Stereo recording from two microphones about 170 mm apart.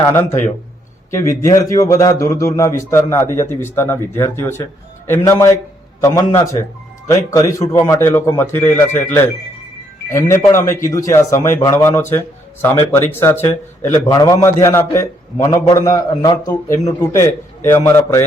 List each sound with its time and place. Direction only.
0.0 s a man's voice: 15° left (ahead or behind)